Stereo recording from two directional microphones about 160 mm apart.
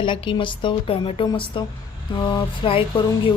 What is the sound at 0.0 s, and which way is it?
Speech, 30° left (ahead or behind).